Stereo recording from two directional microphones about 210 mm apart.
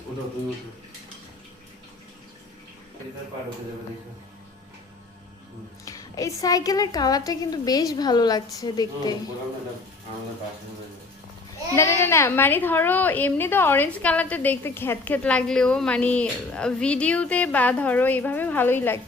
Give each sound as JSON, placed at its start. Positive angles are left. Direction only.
{"t": 5.8, "sound": "a woman's voice", "side_deg": 15}
{"t": 11.8, "sound": "a woman's voice", "side_deg": 15}